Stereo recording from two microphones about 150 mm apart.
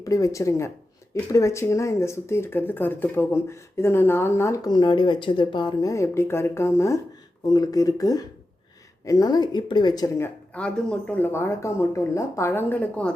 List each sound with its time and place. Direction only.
0.0 s speech: 20° left (ahead or behind)
10.2 s speech: 5° left (ahead or behind)